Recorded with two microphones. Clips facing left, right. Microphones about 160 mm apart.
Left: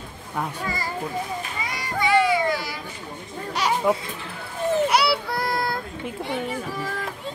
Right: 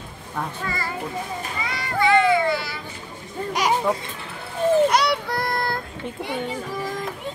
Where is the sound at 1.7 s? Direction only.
15° left (ahead or behind).